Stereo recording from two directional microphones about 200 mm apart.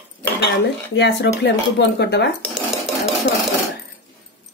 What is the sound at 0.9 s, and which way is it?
Speech, 60° left (ahead or behind).